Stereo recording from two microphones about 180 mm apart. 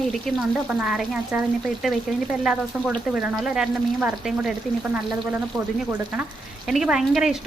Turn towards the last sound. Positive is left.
turn(degrees=-5)  # may be behind; listen again after turning